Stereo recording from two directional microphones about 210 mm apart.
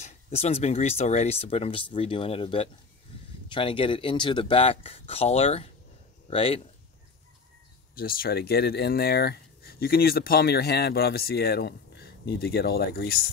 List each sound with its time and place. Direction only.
0.0 s speech: 30° left (ahead or behind)
7.9 s speech: 45° left (ahead or behind)